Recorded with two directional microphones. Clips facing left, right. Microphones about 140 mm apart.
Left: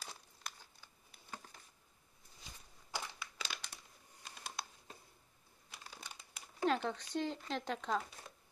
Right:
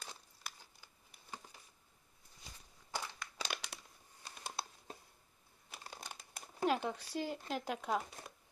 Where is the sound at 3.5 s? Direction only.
90° right.